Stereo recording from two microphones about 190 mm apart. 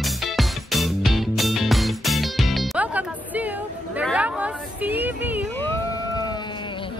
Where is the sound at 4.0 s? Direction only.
5° right (ahead or behind).